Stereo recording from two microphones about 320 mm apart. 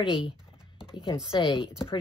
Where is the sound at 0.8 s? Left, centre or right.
Centre.